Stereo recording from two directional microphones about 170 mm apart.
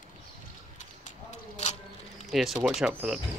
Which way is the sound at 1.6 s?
40° left (ahead or behind).